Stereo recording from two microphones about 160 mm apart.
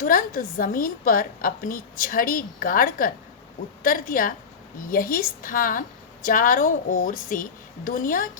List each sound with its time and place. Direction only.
0.0 s a woman's voice: 60° left (ahead or behind)